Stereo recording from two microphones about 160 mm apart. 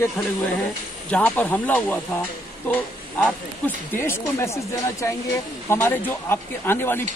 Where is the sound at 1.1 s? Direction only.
10° left (ahead or behind).